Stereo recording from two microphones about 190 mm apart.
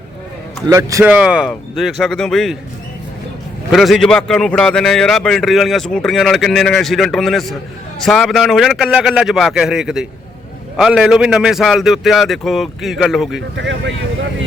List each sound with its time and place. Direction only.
0.7 s a man's voice: 15° right (ahead or behind); by 2.6 s centre (ahead or behind)
3.7 s a man's voice: centre (ahead or behind)
13.6 s speech: 70° right (ahead or behind)